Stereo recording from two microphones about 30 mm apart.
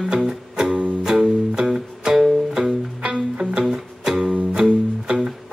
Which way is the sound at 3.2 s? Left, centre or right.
Right.